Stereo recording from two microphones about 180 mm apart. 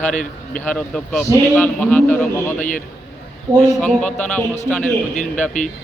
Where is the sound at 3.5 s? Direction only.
15° right (ahead or behind).